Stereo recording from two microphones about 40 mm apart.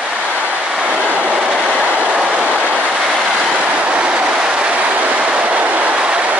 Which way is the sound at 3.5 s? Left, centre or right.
Right.